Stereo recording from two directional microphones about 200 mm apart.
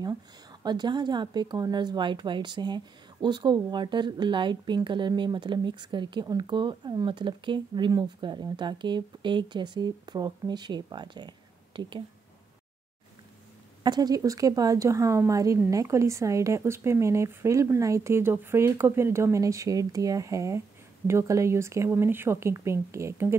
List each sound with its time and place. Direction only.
0.0 s speech: 20° right (ahead or behind)
13.8 s speech: 20° right (ahead or behind)